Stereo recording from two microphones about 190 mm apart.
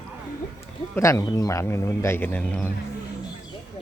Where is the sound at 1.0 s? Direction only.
15° left (ahead or behind).